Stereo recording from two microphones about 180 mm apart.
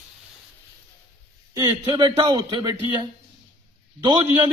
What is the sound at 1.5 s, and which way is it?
A man's voice, 25° right (ahead or behind).